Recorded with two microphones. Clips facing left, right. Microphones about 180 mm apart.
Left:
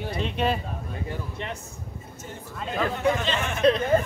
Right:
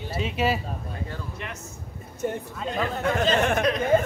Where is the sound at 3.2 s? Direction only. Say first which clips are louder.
Right 6 dB; 40° right (ahead or behind).